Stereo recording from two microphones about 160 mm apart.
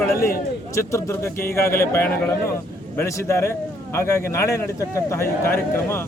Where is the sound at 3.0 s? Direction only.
20° left (ahead or behind).